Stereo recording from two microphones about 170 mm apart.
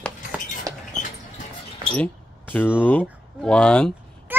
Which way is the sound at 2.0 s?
10° left (ahead or behind).